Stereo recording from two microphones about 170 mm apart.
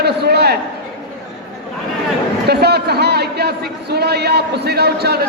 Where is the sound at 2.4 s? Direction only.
70° right (ahead or behind).